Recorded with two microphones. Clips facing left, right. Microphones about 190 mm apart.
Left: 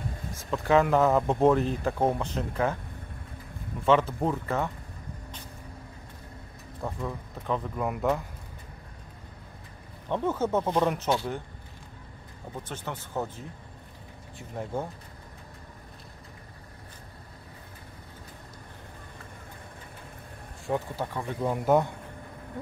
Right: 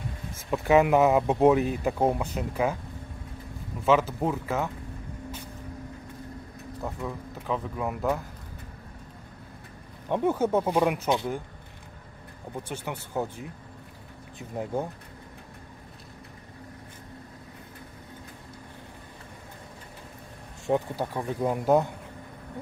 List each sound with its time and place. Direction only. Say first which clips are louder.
0.5 s speech: right 2 dB; 10° right (ahead or behind)
3.8 s speech: even; 5° right (ahead or behind)
6.8 s speech: even; 5° right (ahead or behind)
10.0 s speech: right 3 dB; 15° right (ahead or behind)
12.6 s speech: right 1 dB; 10° right (ahead or behind)
14.5 s speech: right 3 dB; 15° right (ahead or behind)
20.6 s speech: right 4 dB; 15° right (ahead or behind)